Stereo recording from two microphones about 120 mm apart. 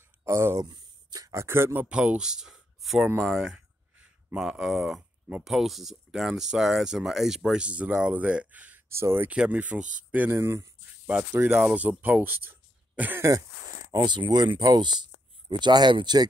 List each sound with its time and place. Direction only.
0.2 s speech: 20° right (ahead or behind)
0.7 s speech: 35° right (ahead or behind); by 3.1 s centre (ahead or behind)
3.2 s a sound: 5° right (ahead or behind)
4.4 s speech: centre (ahead or behind)
13.9 s speech: 40° right (ahead or behind)